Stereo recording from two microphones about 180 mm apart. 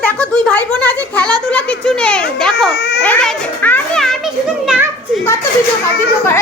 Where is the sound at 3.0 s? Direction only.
10° left (ahead or behind).